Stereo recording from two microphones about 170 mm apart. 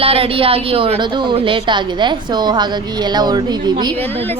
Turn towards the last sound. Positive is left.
turn(degrees=-25)  # may be behind; listen again after turning